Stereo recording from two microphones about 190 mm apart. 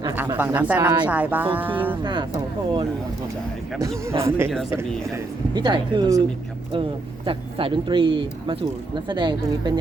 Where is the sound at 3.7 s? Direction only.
15° right (ahead or behind).